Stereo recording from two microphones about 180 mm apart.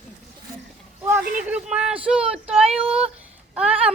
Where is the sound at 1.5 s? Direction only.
5° right (ahead or behind).